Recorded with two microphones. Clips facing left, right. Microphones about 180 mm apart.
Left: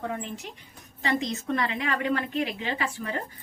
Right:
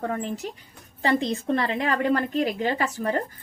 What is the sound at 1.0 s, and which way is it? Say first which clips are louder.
A woman's voice: right 4 dB; 35° right (ahead or behind).